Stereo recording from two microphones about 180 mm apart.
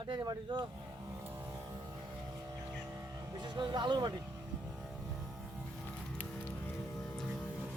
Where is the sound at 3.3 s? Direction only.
25° right (ahead or behind).